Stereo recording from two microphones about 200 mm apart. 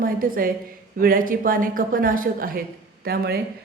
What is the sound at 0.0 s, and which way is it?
A woman's voice, 45° right (ahead or behind).